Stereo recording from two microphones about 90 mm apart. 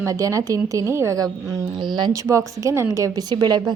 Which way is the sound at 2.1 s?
35° right (ahead or behind).